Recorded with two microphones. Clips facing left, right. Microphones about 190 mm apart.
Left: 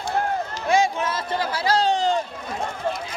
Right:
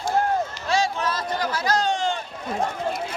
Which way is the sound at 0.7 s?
15° left (ahead or behind).